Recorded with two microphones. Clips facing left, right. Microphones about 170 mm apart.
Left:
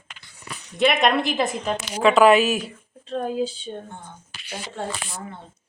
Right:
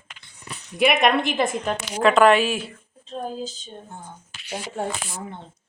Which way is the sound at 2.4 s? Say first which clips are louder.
Left 2 dB; 40° left (ahead or behind).